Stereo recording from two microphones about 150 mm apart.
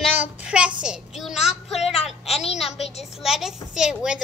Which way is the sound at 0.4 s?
5° right (ahead or behind).